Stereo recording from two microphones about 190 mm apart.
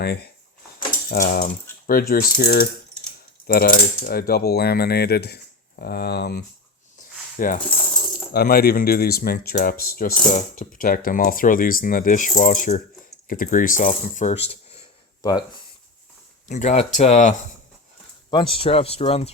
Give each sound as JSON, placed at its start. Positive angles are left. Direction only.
{"t": 0.0, "sound": "coin", "side_deg": 55}
{"t": 0.9, "sound": "cutlery", "side_deg": 50}
{"t": 1.9, "sound": "speech", "side_deg": 50}
{"t": 3.4, "sound": "coin", "side_deg": 50}
{"t": 8.3, "sound": "speech", "side_deg": 55}
{"t": 16.5, "sound": "speech", "side_deg": 35}
{"t": 18.3, "sound": "speech", "side_deg": 25}